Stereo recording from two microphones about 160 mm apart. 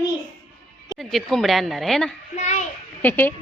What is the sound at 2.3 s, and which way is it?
Speech, 45° left (ahead or behind).